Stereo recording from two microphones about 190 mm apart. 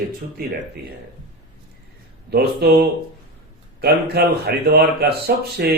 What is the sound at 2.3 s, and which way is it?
Speech, 55° right (ahead or behind).